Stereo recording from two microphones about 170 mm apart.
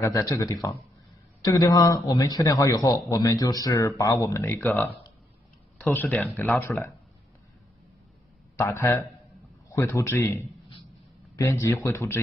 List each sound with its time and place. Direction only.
0.0 s a man's voice: 20° left (ahead or behind)
6.6 s speech: 20° left (ahead or behind)
8.5 s speech: 15° left (ahead or behind)